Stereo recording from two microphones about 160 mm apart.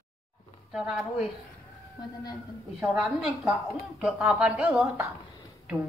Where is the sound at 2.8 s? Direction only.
5° right (ahead or behind).